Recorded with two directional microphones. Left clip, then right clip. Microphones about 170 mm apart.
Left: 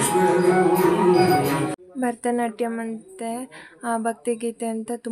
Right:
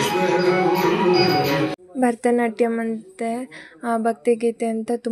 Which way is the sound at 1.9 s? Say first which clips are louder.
Right 5 dB; 25° right (ahead or behind).